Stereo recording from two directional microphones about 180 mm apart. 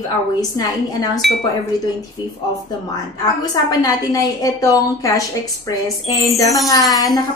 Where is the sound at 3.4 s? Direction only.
20° left (ahead or behind).